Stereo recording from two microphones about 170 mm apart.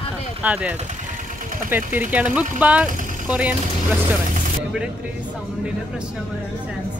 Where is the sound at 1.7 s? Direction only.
10° right (ahead or behind).